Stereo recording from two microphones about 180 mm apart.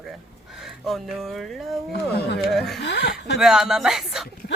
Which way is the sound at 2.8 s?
65° left (ahead or behind).